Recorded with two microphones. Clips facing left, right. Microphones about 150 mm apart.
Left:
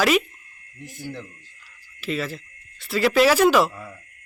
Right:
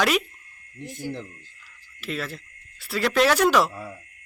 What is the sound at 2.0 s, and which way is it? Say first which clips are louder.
Speech: left 4 dB; centre (ahead or behind).